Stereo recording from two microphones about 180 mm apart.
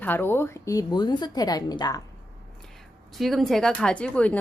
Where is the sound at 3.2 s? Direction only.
Centre (ahead or behind).